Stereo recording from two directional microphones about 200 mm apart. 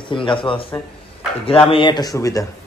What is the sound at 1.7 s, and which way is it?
Speech, 25° left (ahead or behind).